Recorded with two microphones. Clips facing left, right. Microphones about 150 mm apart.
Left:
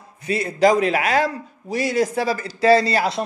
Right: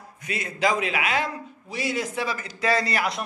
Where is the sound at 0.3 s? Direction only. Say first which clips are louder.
Left 8 dB; 35° left (ahead or behind).